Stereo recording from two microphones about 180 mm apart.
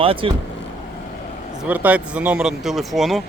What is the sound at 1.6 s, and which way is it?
Speech, 10° right (ahead or behind).